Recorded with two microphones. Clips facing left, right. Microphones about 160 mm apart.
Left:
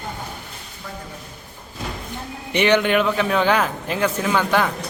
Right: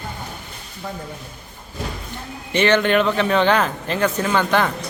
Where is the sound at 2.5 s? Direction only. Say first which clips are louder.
Right 1 dB; 15° left (ahead or behind).